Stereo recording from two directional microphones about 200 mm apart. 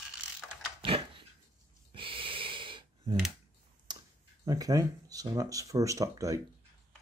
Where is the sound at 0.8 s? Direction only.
25° right (ahead or behind).